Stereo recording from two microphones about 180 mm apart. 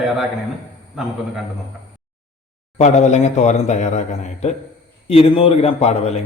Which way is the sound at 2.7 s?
40° left (ahead or behind).